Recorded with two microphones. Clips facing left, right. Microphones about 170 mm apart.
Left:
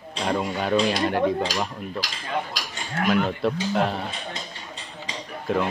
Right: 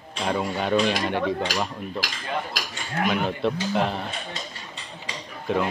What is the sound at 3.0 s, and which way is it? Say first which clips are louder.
Speech: left 2 dB; centre (ahead or behind).